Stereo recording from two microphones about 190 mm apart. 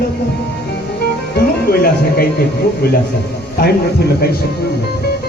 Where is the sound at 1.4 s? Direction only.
50° left (ahead or behind).